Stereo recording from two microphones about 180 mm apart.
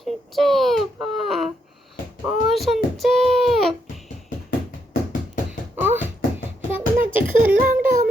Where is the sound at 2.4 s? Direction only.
Centre (ahead or behind).